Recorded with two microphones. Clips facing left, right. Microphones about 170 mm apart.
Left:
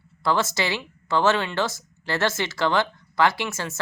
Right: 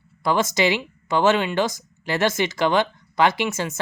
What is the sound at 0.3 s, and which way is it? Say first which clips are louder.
Speech: right 4 dB; 15° right (ahead or behind).